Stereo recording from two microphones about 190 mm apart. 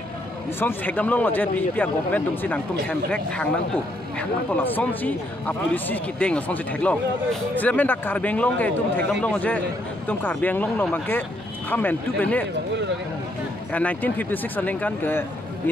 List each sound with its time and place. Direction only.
0.6 s speech: 10° left (ahead or behind)
13.7 s speech: 5° left (ahead or behind)